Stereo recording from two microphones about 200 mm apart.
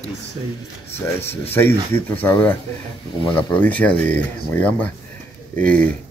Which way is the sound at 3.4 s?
10° left (ahead or behind).